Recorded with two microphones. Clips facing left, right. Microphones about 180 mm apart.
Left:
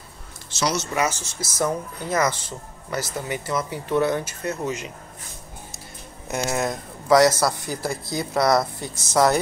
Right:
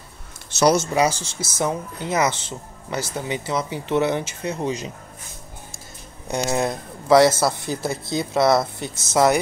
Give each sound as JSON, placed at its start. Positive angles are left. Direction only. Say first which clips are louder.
{"t": 0.6, "sound": "speech", "louder": "right 8 dB", "side_deg": -55}
{"t": 0.9, "sound": "speech", "louder": "right 4 dB", "side_deg": -35}
{"t": 6.2, "sound": "speech", "louder": "right 2 dB", "side_deg": -30}